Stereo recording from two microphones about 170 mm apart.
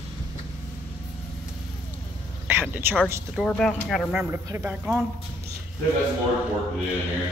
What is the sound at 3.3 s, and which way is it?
Speech, 5° left (ahead or behind).